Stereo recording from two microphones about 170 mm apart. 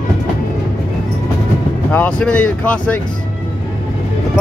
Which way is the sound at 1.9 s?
10° left (ahead or behind).